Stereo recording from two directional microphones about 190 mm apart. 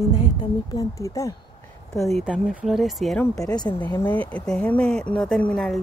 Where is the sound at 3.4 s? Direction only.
20° left (ahead or behind).